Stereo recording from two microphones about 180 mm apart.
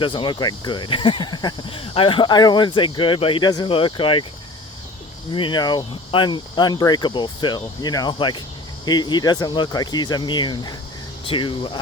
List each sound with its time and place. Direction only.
0.0 s speech: 25° left (ahead or behind)
5.3 s speech: 25° left (ahead or behind)